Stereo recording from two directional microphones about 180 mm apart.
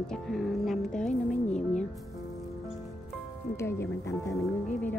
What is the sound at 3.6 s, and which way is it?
Speech, 15° left (ahead or behind).